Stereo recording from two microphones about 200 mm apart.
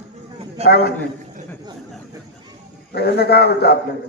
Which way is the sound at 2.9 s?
55° left (ahead or behind).